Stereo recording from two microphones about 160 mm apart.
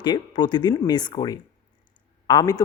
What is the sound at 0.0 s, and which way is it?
Speech, 30° left (ahead or behind).